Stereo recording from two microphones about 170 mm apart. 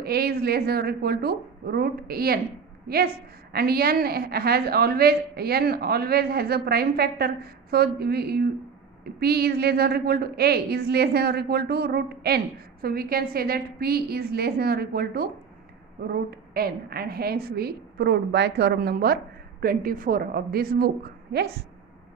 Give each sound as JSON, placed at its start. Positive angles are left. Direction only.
{"t": 0.0, "sound": "a woman's voice", "side_deg": -65}